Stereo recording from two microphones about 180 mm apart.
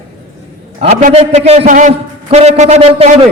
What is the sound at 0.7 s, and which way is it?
A man's voice, 35° right (ahead or behind).